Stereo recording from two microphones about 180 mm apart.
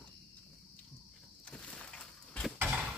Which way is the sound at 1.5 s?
5° left (ahead or behind).